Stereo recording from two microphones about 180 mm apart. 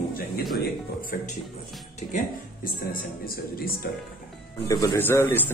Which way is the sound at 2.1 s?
50° left (ahead or behind).